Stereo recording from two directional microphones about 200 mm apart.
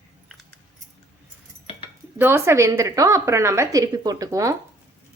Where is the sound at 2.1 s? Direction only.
10° right (ahead or behind).